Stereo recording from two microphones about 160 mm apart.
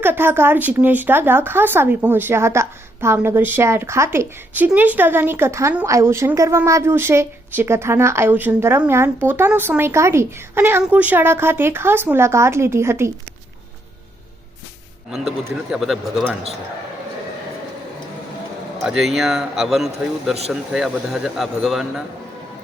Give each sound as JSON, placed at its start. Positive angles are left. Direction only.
{"t": 0.0, "sound": "speech", "side_deg": -15}
{"t": 15.7, "sound": "speech", "side_deg": 0}
{"t": 18.8, "sound": "speech", "side_deg": 0}